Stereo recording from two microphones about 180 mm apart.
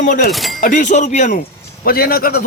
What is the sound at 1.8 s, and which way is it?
Speech, 55° left (ahead or behind).